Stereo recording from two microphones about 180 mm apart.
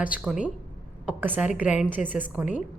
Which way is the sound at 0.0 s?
5° right (ahead or behind).